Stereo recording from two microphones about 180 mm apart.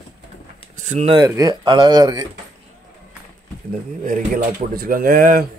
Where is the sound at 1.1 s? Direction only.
20° right (ahead or behind).